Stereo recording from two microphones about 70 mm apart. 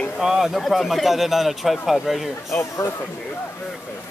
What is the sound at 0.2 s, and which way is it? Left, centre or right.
Speech, centre.